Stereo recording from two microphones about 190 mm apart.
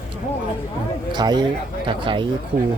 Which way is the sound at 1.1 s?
20° right (ahead or behind).